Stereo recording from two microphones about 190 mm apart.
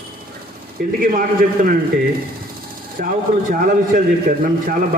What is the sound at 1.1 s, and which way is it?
Speech, 45° right (ahead or behind).